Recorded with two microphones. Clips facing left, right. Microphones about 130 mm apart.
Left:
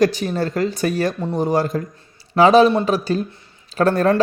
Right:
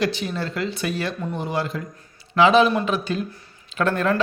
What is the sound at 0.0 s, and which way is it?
A man's voice, 40° left (ahead or behind).